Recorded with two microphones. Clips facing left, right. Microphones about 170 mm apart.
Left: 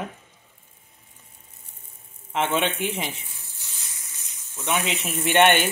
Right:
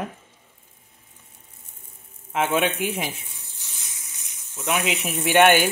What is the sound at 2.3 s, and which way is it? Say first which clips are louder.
Speech: right 2 dB; 5° right (ahead or behind).